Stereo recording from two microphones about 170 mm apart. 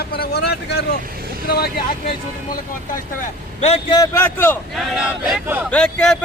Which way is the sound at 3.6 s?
40° left (ahead or behind).